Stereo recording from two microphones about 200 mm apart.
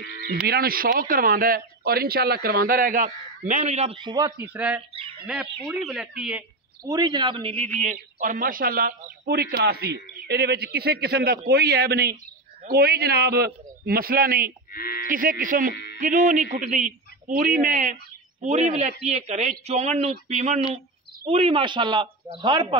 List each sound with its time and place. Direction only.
0.5 s speech: 50° right (ahead or behind); by 4.5 s 20° right (ahead or behind)
4.6 s speech: 5° right (ahead or behind)
6.8 s a man's voice: 20° right (ahead or behind)
7.8 s speech: 40° right (ahead or behind)
14.7 s sheep: 45° left (ahead or behind)
15.0 s speech: 45° right (ahead or behind); by 22.8 s 25° right (ahead or behind)